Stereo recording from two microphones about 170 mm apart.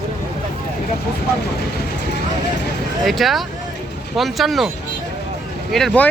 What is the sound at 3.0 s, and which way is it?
Speech, centre (ahead or behind).